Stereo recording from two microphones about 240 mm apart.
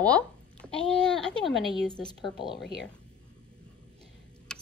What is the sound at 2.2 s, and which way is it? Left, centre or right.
Speech, centre.